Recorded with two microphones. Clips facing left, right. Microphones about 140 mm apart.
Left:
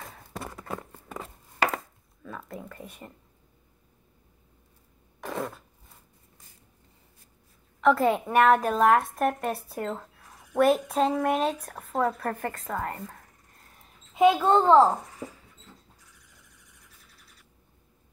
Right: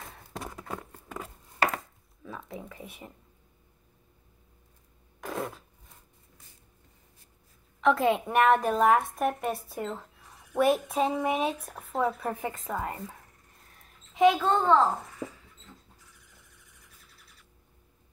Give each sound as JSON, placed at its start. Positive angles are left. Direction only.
{"t": 0.0, "sound": "a sound", "side_deg": 0}
{"t": 2.2, "sound": "speech", "side_deg": 0}
{"t": 5.2, "sound": "a sound", "side_deg": 0}
{"t": 7.8, "sound": "a woman's voice", "side_deg": 0}
{"t": 14.1, "sound": "a child's voice", "side_deg": 0}
{"t": 14.5, "sound": "a child's voice", "side_deg": 25}